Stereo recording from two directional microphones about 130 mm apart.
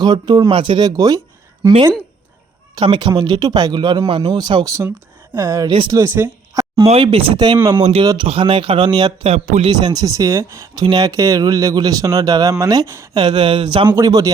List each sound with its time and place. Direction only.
0.0 s speech: 35° right (ahead or behind)
2.8 s speech: 35° right (ahead or behind)
7.0 s speech: 45° right (ahead or behind)
7.3 s speech: 35° right (ahead or behind)
7.8 s speech: 50° right (ahead or behind)
8.0 s speech: 30° right (ahead or behind)
8.3 s speech: 40° right (ahead or behind); by 13.1 s 25° right (ahead or behind)
13.1 s speech: 35° right (ahead or behind)
13.9 s speech: 25° right (ahead or behind)